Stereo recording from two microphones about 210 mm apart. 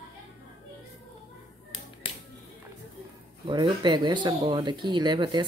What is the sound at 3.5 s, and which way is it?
Speech, 20° right (ahead or behind).